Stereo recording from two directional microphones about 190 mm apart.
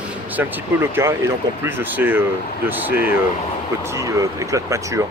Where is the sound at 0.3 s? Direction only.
10° right (ahead or behind).